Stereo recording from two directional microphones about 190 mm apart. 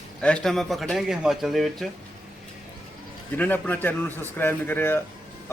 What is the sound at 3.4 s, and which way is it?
Speech, 10° left (ahead or behind).